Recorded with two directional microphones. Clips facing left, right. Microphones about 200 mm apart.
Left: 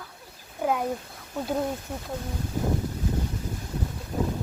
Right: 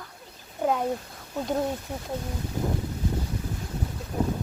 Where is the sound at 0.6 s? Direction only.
5° left (ahead or behind).